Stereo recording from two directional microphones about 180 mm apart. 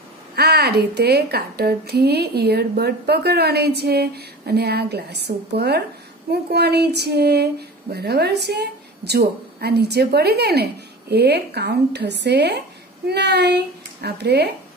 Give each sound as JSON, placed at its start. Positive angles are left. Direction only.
{"t": 0.4, "sound": "speech", "side_deg": -65}